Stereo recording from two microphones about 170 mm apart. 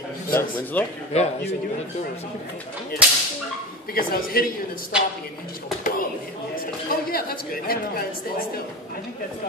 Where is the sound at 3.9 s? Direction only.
60° left (ahead or behind).